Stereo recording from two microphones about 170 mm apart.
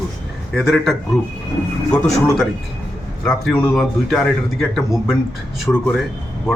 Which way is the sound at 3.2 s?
5° left (ahead or behind).